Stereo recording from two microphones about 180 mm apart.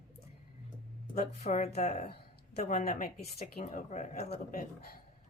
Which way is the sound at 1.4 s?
40° left (ahead or behind).